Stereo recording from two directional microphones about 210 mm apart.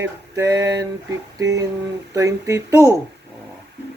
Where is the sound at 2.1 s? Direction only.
15° right (ahead or behind).